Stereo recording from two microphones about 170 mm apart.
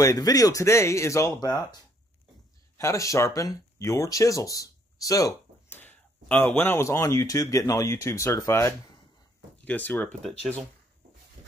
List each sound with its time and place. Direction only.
0.0 s speech: 20° left (ahead or behind)
2.8 s speech: 15° left (ahead or behind)